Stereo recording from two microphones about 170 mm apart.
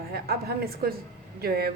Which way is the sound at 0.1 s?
65° right (ahead or behind).